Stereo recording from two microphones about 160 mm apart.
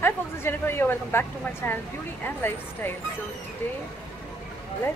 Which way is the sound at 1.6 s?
15° left (ahead or behind).